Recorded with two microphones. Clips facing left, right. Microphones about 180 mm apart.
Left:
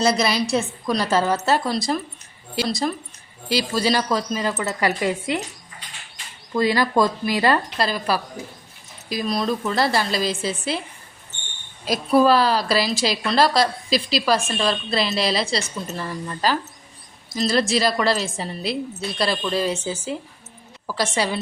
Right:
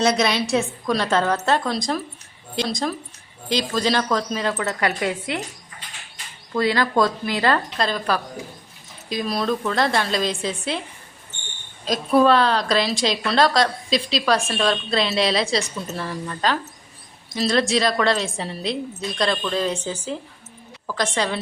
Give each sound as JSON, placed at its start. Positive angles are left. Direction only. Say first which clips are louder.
{"t": 0.0, "sound": "a woman's voice", "louder": "even", "side_deg": 0}
{"t": 6.5, "sound": "a woman's voice", "louder": "left 1 dB", "side_deg": 10}
{"t": 11.9, "sound": "a woman's voice", "louder": "even", "side_deg": 5}